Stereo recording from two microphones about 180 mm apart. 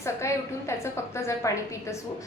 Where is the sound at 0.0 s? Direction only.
15° left (ahead or behind).